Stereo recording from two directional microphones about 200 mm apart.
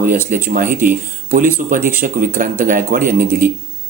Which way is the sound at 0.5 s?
45° right (ahead or behind).